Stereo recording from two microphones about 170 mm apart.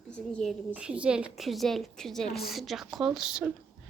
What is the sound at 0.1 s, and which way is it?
Speech, 5° left (ahead or behind).